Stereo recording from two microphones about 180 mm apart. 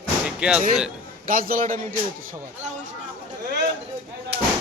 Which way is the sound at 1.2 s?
50° right (ahead or behind).